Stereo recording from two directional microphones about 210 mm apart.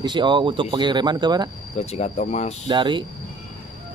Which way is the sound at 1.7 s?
30° left (ahead or behind).